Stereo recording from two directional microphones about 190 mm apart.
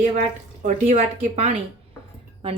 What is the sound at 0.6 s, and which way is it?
Speech, 40° right (ahead or behind).